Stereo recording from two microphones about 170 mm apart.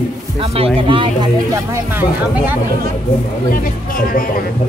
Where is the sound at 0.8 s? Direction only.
30° right (ahead or behind).